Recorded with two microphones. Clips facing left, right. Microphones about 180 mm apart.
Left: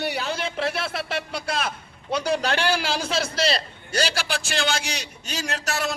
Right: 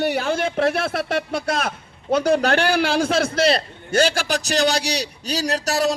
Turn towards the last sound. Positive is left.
turn(degrees=-35)  # may be behind; listen again after turning